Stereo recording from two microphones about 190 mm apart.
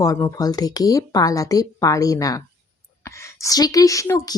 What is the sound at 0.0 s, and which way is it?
A woman's voice, 20° left (ahead or behind).